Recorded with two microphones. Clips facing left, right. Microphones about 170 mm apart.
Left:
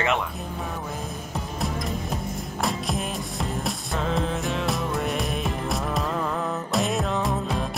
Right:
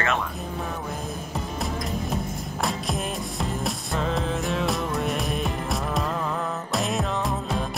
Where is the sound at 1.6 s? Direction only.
Centre (ahead or behind).